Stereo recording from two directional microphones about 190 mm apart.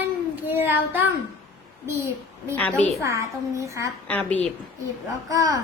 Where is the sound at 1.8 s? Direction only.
15° right (ahead or behind).